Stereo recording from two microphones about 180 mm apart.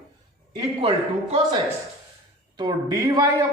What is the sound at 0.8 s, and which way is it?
Speech, 30° right (ahead or behind).